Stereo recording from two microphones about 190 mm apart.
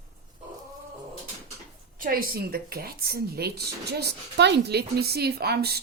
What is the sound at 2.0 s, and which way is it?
Speech, 50° right (ahead or behind).